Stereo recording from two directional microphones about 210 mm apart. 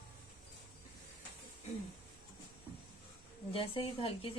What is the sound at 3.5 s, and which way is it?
Speech, 25° left (ahead or behind).